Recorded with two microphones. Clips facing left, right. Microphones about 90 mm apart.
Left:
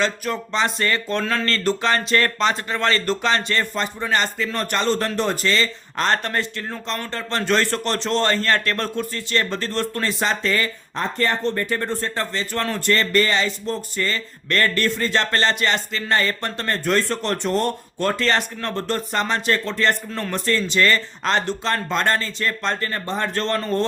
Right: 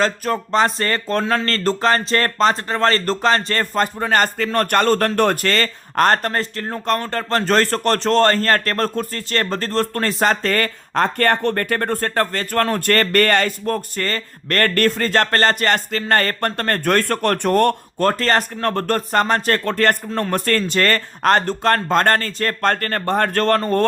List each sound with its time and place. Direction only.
0.0 s speech: 45° right (ahead or behind)
10.9 s speech: 60° right (ahead or behind)
18.1 s speech: 45° right (ahead or behind)